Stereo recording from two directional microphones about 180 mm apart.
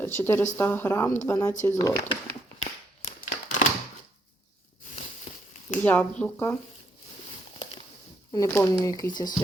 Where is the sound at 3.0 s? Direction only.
40° left (ahead or behind).